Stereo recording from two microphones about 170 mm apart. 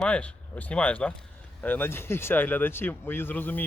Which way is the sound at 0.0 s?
5° left (ahead or behind).